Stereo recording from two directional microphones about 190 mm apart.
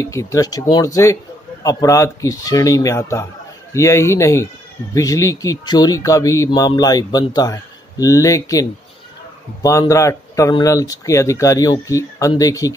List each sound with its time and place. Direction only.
0.0 s speech: 15° left (ahead or behind)